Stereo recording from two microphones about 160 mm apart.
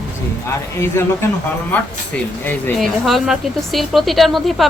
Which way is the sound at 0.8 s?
15° left (ahead or behind).